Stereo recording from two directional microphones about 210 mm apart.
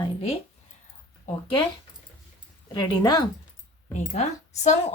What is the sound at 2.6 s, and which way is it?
Speech, 20° left (ahead or behind).